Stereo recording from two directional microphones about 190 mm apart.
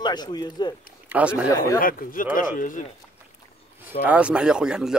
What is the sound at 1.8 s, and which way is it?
Speech, 45° left (ahead or behind).